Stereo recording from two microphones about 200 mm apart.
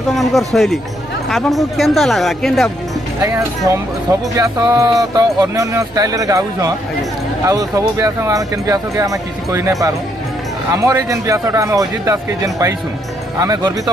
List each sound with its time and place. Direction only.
0.1 s speech: centre (ahead or behind)
3.2 s speech: 15° right (ahead or behind)